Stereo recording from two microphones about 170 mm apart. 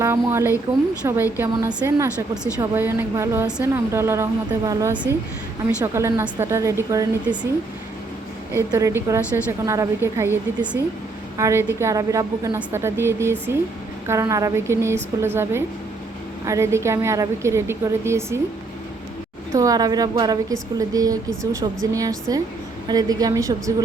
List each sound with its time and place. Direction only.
0.0 s a woman's voice: 15° right (ahead or behind)
8.5 s a woman's voice: 15° right (ahead or behind)
19.5 s a woman's voice: 20° right (ahead or behind)